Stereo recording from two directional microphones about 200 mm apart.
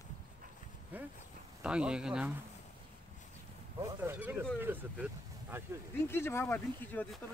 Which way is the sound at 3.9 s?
10° right (ahead or behind).